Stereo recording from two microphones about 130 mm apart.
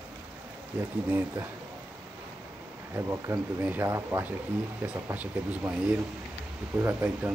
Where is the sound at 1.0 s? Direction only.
15° right (ahead or behind).